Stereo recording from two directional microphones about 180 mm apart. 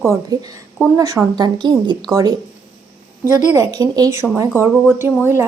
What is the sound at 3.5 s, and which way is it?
A woman's voice, 20° right (ahead or behind).